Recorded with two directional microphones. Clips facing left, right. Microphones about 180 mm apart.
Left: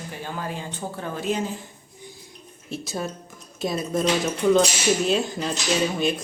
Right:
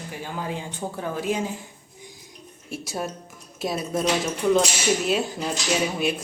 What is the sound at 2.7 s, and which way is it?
Speech, 10° right (ahead or behind).